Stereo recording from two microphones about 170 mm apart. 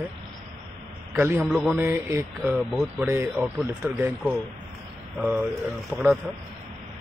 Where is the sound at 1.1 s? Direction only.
15° right (ahead or behind).